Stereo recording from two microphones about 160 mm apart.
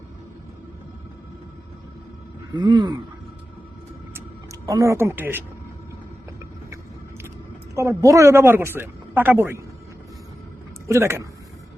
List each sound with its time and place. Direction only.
2.5 s speech: 25° right (ahead or behind)
4.6 s speech: 20° right (ahead or behind)
7.8 s speech: 20° right (ahead or behind)
10.8 s speech: 15° right (ahead or behind)